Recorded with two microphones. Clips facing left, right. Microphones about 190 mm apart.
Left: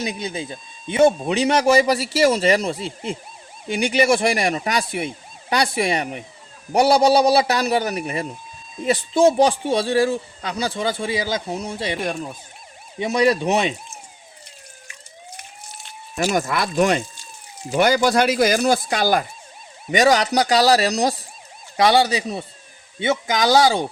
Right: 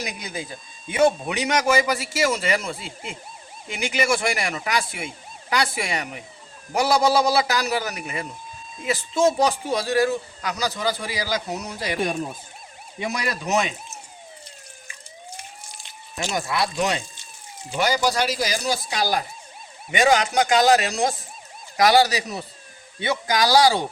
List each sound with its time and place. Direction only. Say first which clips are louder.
0.0 s a man's voice: left 5 dB; 25° left (ahead or behind)
13.0 s a man's voice: left 10 dB; 25° left (ahead or behind)
16.3 s speech: left 2 dB; 50° left (ahead or behind)
19.9 s a man's voice: left 3 dB; 40° left (ahead or behind); by 23.8 s 20° left (ahead or behind)